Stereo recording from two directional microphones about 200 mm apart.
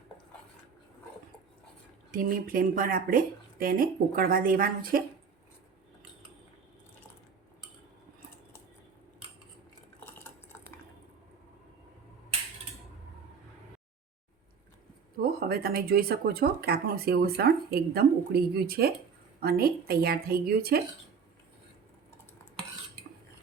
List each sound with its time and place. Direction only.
2.1 s speech: 45° right (ahead or behind)
10.0 s cutlery: 10° left (ahead or behind)
15.2 s speech: 50° right (ahead or behind)